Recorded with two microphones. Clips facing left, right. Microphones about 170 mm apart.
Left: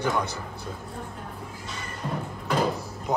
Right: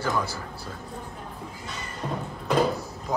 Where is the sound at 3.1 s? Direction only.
20° left (ahead or behind).